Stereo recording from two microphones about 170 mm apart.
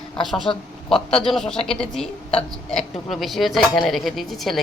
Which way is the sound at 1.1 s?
Centre (ahead or behind).